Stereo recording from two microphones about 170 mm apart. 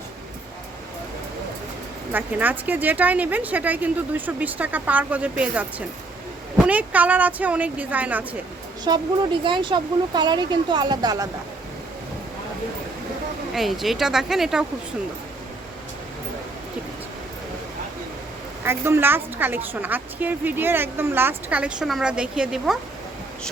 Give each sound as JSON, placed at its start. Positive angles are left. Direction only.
{"t": 2.1, "sound": "a woman's voice", "side_deg": -10}
{"t": 8.9, "sound": "speech", "side_deg": -25}
{"t": 13.5, "sound": "speech", "side_deg": 0}
{"t": 18.6, "sound": "a woman's voice", "side_deg": -15}